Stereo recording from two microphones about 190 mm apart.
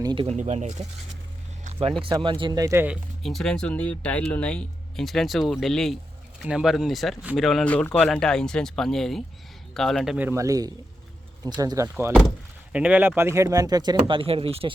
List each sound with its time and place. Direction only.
0.0 s speech: 25° right (ahead or behind)
0.3 s speech: 35° right (ahead or behind)
2.0 s speech: 25° right (ahead or behind); by 10.2 s centre (ahead or behind)
10.2 s speech: 10° right (ahead or behind); by 14.7 s 30° right (ahead or behind)